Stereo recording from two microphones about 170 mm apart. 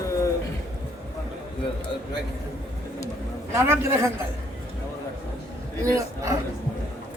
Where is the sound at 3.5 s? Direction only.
15° right (ahead or behind).